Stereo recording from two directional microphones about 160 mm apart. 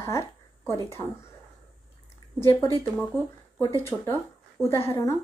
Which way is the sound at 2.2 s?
25° left (ahead or behind).